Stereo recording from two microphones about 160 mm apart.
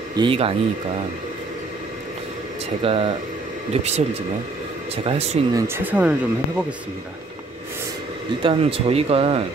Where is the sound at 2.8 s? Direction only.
35° right (ahead or behind).